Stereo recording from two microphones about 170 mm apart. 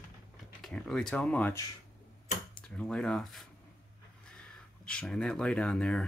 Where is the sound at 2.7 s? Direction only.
5° left (ahead or behind).